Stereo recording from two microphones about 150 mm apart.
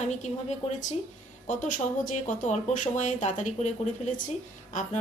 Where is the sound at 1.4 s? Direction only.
60° left (ahead or behind).